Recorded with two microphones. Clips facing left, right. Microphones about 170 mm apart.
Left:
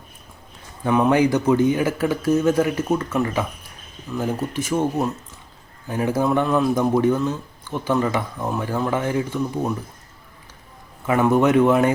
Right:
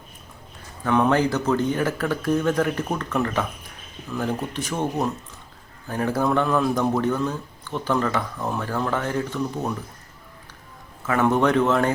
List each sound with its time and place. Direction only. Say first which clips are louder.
0.9 s a man's voice: left 3 dB; 10° left (ahead or behind)
11.0 s a man's voice: left 3 dB; 15° left (ahead or behind)